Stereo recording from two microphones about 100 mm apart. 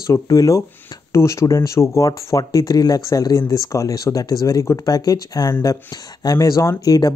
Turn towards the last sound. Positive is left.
turn(degrees=40)  # may be behind; listen again after turning